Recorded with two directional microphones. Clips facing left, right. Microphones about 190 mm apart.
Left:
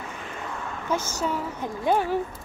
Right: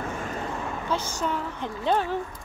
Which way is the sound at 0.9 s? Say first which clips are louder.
Left 4 dB; 45° left (ahead or behind).